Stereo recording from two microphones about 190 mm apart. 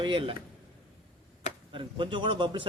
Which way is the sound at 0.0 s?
25° right (ahead or behind).